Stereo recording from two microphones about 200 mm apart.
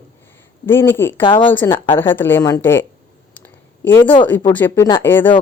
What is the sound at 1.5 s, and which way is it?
Speech, 10° left (ahead or behind).